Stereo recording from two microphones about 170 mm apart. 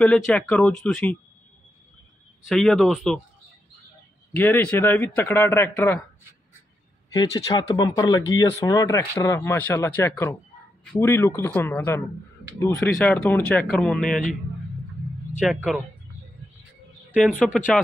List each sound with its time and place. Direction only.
0.3 s a man's voice: 5° left (ahead or behind)
2.4 s speech: centre (ahead or behind)
4.4 s a man's voice: 10° left (ahead or behind)
7.1 s a man's voice: 25° left (ahead or behind); by 14.2 s 5° left (ahead or behind)
15.4 s speech: 5° right (ahead or behind)
17.4 s speech: 5° left (ahead or behind)